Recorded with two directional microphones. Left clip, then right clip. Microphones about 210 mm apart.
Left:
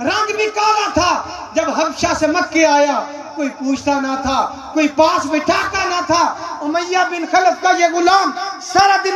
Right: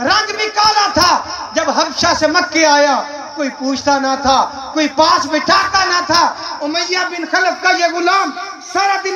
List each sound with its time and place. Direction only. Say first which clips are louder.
0.0 s a sound: right 2 dB; 25° right (ahead or behind)
6.7 s speech: left 2 dB; 15° right (ahead or behind)
7.6 s a man's voice: even; 15° left (ahead or behind)